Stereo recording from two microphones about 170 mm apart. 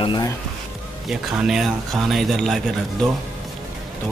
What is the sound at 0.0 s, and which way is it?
Speech, 30° left (ahead or behind).